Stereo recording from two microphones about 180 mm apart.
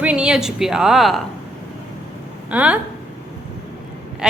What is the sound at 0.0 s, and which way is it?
A woman's voice, 5° right (ahead or behind).